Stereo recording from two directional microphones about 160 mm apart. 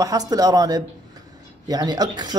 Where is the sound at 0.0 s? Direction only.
25° right (ahead or behind).